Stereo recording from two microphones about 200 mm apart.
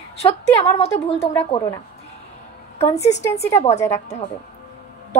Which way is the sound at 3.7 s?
35° left (ahead or behind).